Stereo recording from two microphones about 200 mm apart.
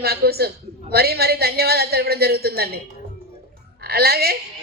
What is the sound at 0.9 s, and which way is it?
A man's voice, 50° right (ahead or behind).